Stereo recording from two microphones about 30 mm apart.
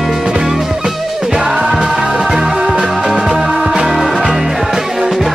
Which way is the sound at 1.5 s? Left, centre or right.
Right.